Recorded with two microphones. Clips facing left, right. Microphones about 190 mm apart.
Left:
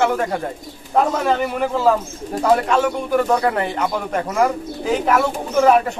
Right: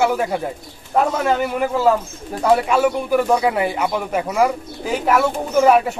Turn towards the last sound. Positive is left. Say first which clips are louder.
# even
turn(degrees=-5)  # may be behind; listen again after turning